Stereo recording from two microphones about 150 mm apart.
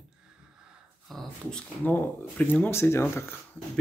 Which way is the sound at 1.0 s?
Centre (ahead or behind).